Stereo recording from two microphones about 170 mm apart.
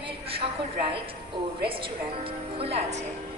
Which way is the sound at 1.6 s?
30° right (ahead or behind).